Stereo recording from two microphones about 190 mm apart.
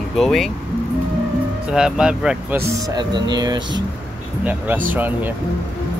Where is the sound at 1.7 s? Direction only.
5° right (ahead or behind).